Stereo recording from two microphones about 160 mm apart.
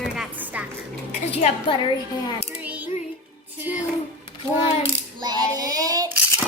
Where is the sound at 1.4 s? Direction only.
30° left (ahead or behind).